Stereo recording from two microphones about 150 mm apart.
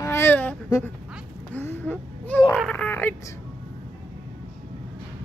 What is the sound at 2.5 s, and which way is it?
Speech, 5° left (ahead or behind).